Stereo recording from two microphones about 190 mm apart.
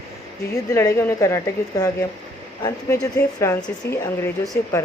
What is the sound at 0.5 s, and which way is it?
A woman's voice, 15° left (ahead or behind).